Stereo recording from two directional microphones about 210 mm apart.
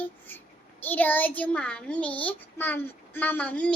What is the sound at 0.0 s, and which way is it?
A child's voice, 10° left (ahead or behind).